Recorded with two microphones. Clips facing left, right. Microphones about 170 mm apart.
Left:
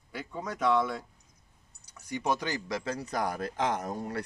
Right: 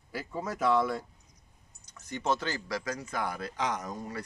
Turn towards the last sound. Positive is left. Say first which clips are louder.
# left 3 dB
turn(degrees=60)  # may be behind; listen again after turning